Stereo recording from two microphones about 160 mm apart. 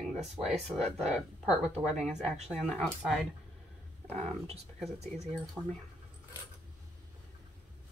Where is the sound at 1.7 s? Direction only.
40° right (ahead or behind).